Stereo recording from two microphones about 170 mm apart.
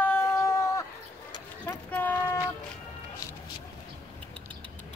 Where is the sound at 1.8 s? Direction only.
10° left (ahead or behind).